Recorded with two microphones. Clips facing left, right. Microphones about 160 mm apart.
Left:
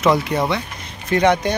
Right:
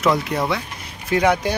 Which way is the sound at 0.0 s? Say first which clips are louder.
Left 2 dB; centre (ahead or behind).